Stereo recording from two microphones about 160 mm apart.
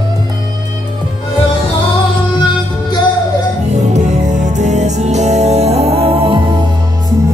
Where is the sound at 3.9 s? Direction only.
50° right (ahead or behind).